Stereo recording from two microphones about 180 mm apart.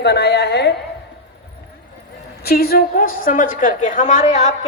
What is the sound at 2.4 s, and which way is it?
A woman's voice, 55° left (ahead or behind).